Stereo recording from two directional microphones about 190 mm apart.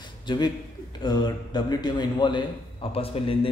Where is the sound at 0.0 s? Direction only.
25° left (ahead or behind).